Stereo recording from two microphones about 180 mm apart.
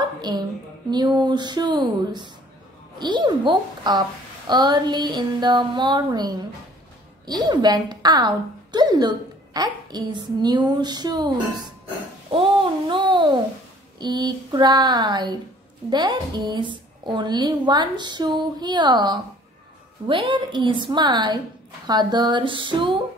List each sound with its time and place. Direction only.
0.2 s a woman's voice: 25° right (ahead or behind)
12.3 s a sound: 30° right (ahead or behind)
13.9 s a woman's voice: 25° right (ahead or behind)